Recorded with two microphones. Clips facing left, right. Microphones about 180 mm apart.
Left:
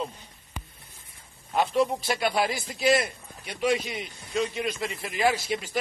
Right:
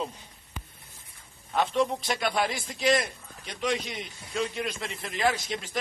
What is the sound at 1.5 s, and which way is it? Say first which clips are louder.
A man's voice: left 2 dB; 5° left (ahead or behind).